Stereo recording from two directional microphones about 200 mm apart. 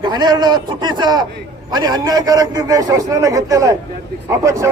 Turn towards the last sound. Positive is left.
turn(degrees=-15)  # may be behind; listen again after turning